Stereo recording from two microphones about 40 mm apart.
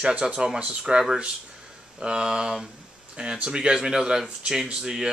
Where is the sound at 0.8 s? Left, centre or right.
Centre.